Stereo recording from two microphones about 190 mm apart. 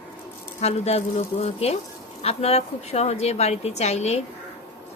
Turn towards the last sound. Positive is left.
turn(degrees=35)  # may be behind; listen again after turning